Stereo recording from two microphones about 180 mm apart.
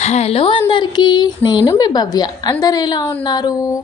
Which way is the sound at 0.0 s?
35° left (ahead or behind).